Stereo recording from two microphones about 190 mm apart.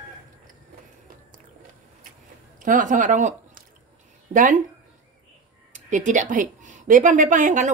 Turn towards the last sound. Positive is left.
turn(degrees=-40)  # may be behind; listen again after turning